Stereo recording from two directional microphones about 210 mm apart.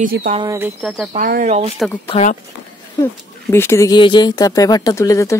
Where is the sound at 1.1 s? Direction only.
40° right (ahead or behind).